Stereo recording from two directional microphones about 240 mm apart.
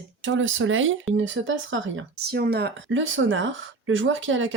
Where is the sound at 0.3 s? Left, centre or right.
Right.